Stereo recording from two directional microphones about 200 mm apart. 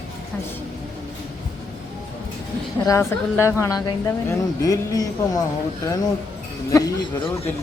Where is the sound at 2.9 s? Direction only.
15° left (ahead or behind).